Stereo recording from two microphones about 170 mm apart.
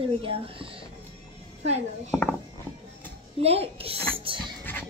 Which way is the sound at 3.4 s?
35° right (ahead or behind).